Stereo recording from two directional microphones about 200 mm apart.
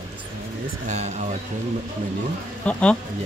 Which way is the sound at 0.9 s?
35° right (ahead or behind).